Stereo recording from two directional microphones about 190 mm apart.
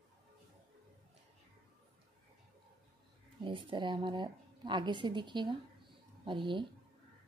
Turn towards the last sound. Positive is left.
turn(degrees=-25)  # may be behind; listen again after turning